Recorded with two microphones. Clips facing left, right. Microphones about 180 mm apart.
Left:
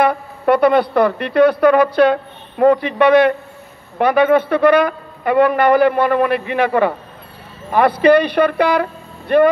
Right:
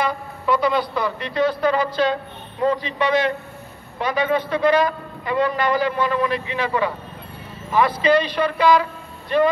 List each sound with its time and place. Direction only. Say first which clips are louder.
0.0 s a man's voice: left 8 dB; 60° left (ahead or behind)